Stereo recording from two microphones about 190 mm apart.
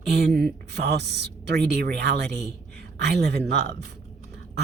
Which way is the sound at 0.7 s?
60° right (ahead or behind).